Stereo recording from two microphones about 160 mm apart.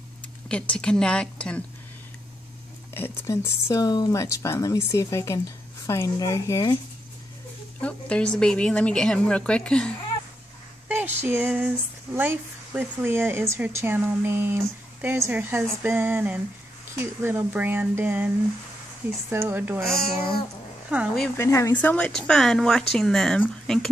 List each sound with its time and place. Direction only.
0.5 s speech: 5° left (ahead or behind)
2.9 s speech: 15° left (ahead or behind)
7.8 s a woman's voice: 5° left (ahead or behind)
10.9 s a sound: 10° right (ahead or behind)
12.2 s speech: 10° right (ahead or behind)
19.3 s speech: 10° right (ahead or behind)
20.9 s speech: 10° right (ahead or behind)
21.4 s speech: 20° left (ahead or behind)